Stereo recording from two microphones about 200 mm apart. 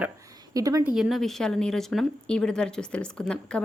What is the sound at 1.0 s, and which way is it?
Speech, centre (ahead or behind).